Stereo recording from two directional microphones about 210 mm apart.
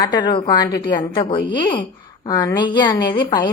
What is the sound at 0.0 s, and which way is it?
A woman's voice, 20° left (ahead or behind).